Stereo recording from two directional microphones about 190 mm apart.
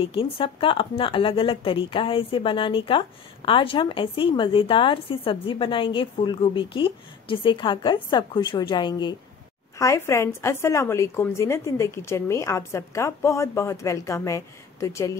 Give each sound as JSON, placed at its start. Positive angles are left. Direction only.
{"t": 0.0, "sound": "a woman's voice", "side_deg": 30}